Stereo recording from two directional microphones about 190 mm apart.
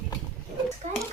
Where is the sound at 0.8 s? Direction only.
40° right (ahead or behind).